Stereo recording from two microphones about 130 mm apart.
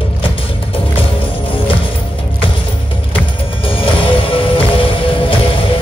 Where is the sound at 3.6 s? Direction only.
40° left (ahead or behind).